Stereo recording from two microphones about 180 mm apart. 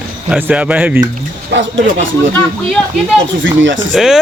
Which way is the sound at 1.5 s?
90° right.